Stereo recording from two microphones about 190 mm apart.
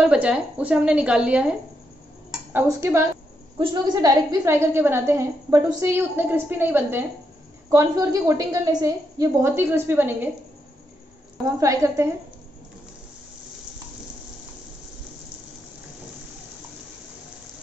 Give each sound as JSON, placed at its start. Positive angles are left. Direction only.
{"t": 0.0, "sound": "a woman's voice", "side_deg": -5}
{"t": 3.5, "sound": "a woman's voice", "side_deg": -25}
{"t": 11.4, "sound": "a woman's voice", "side_deg": -15}